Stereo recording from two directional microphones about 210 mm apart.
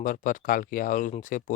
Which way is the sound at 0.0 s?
40° left (ahead or behind).